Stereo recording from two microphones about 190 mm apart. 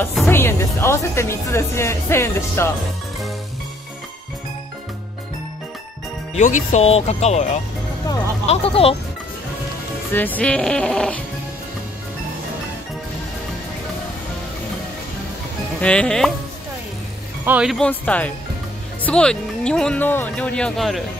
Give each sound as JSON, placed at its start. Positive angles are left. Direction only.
{"t": 0.3, "sound": "speech", "side_deg": 10}
{"t": 6.3, "sound": "speech", "side_deg": 40}
{"t": 10.1, "sound": "speech", "side_deg": 10}
{"t": 15.8, "sound": "speech", "side_deg": 5}
{"t": 17.5, "sound": "speech", "side_deg": -5}